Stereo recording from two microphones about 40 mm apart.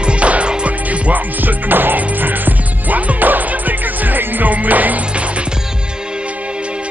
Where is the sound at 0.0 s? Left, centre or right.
Right.